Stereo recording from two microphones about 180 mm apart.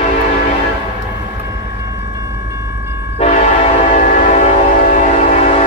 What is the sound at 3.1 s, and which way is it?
Train, 35° left (ahead or behind).